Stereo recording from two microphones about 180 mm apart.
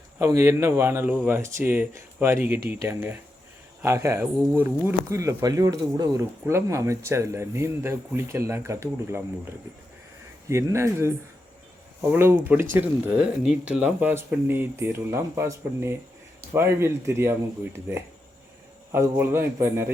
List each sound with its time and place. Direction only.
0.2 s speech: 15° right (ahead or behind)
10.5 s speech: 15° right (ahead or behind)
12.1 s speech: 10° right (ahead or behind)
18.9 s speech: 15° right (ahead or behind)